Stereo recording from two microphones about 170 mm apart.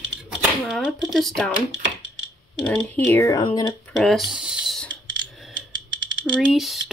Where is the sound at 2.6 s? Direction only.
10° left (ahead or behind); by 3.8 s 25° left (ahead or behind).